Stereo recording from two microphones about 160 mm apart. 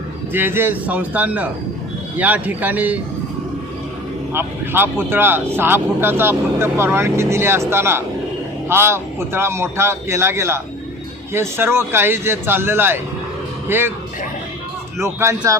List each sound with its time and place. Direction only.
0.3 s speech: 15° right (ahead or behind)
4.4 s speech: 15° right (ahead or behind)
14.9 s speech: 15° right (ahead or behind)